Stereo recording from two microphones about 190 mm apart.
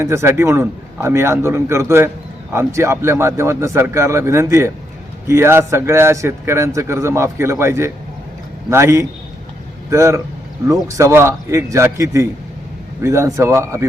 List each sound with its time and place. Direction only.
0.0 s speech: 15° right (ahead or behind)